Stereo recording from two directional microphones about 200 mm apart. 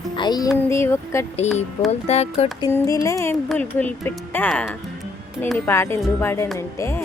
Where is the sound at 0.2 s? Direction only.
20° left (ahead or behind).